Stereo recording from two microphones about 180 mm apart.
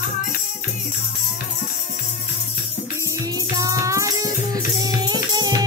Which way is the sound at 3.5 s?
20° right (ahead or behind).